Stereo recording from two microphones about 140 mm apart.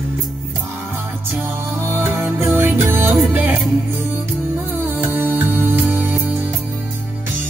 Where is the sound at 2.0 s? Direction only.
15° right (ahead or behind).